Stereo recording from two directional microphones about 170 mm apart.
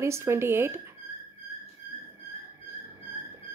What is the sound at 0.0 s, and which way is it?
Speech, 15° right (ahead or behind).